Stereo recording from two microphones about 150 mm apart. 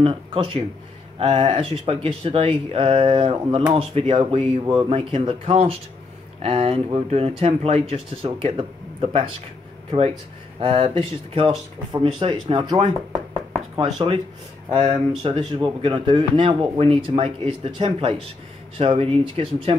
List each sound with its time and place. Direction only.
0.0 s speech: 35° right (ahead or behind)
9.8 s speech: 40° right (ahead or behind)
13.3 s a sound: 35° right (ahead or behind)
14.8 s speech: 40° right (ahead or behind)